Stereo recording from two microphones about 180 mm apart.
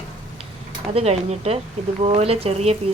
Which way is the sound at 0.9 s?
35° right (ahead or behind).